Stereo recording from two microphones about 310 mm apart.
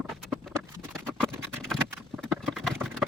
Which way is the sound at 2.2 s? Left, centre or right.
Centre.